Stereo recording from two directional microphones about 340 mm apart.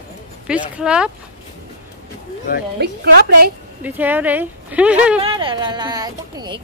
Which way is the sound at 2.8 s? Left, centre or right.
Right.